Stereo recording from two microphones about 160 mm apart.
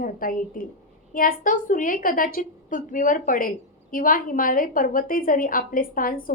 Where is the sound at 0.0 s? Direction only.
60° left (ahead or behind).